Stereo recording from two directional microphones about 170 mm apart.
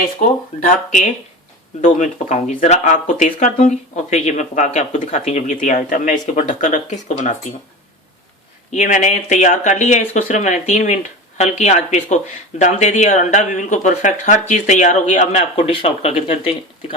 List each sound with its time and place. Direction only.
0.0 s speech: 50° left (ahead or behind)
8.7 s speech: 45° left (ahead or behind)